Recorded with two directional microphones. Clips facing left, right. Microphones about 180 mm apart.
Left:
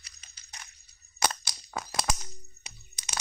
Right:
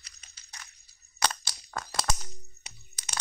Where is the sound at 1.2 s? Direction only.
5° left (ahead or behind).